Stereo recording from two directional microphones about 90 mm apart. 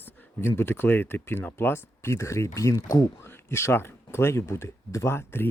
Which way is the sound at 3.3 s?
25° left (ahead or behind).